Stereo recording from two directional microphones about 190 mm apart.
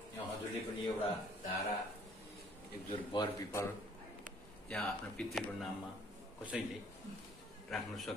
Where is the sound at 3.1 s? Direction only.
20° left (ahead or behind).